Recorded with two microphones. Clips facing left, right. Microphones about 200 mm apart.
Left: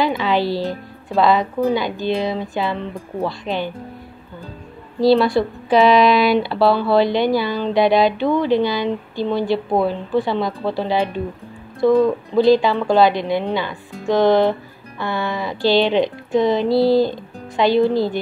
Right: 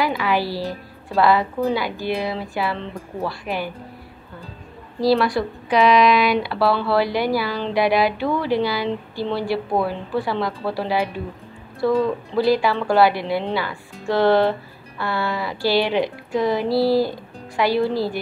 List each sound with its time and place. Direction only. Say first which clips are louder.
0.0 s speech: left 3 dB; 20° left (ahead or behind)
5.0 s speech: left 4 dB; 25° left (ahead or behind)